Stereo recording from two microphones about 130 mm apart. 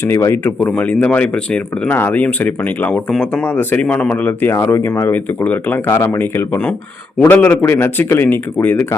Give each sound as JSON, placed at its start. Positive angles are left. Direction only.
{"t": 0.0, "sound": "speech", "side_deg": 20}